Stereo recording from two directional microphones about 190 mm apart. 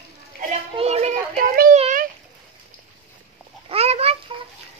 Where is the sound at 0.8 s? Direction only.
35° right (ahead or behind).